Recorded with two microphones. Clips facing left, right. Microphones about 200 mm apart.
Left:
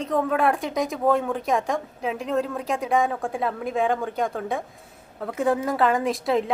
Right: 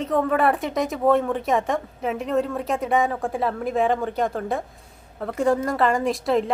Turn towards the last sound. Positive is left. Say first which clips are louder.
# right 1 dB
turn(degrees=0)  # may be behind; listen again after turning